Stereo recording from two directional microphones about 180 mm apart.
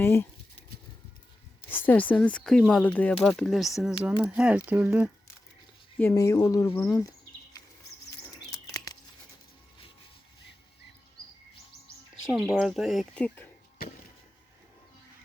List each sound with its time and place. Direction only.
0.0 s speech: 10° left (ahead or behind)
1.9 s speech: 10° left (ahead or behind); by 5.1 s 10° right (ahead or behind)
6.0 s speech: 15° left (ahead or behind)
8.4 s a sound: 20° left (ahead or behind)
12.3 s speech: centre (ahead or behind)